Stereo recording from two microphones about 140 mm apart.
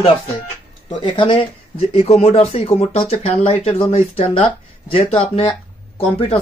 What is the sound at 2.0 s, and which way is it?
Speech, 50° left (ahead or behind).